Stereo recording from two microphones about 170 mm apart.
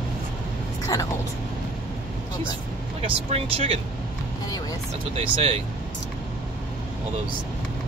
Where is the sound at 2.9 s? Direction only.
35° right (ahead or behind).